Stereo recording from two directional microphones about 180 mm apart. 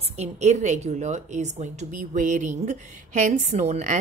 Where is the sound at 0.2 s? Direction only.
40° right (ahead or behind).